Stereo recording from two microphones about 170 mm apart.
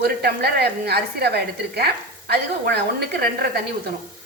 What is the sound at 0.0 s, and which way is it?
A woman's voice, 70° right (ahead or behind).